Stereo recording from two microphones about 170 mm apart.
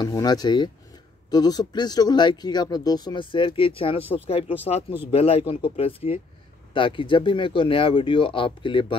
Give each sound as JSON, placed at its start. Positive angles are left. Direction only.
{"t": 0.0, "sound": "speech", "side_deg": 25}